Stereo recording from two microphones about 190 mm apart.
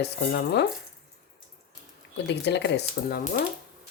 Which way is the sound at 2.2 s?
65° left (ahead or behind).